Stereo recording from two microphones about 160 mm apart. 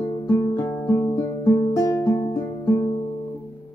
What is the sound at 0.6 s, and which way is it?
Music, 15° left (ahead or behind).